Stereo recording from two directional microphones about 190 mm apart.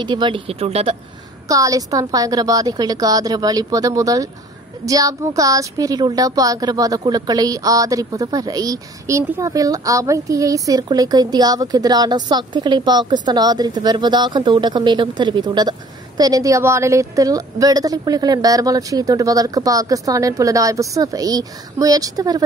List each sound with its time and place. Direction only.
0.0 s a woman's voice: 25° right (ahead or behind)
1.5 s a woman's voice: 20° right (ahead or behind)